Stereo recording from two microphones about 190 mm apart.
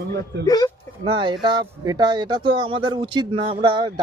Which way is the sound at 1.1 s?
25° right (ahead or behind).